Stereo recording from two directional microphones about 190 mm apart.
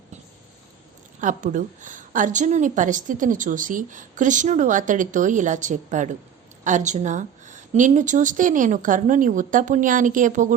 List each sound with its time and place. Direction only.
1.2 s a woman's voice: 40° right (ahead or behind)